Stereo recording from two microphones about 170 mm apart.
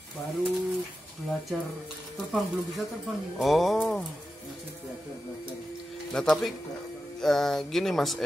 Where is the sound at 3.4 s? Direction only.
Centre (ahead or behind).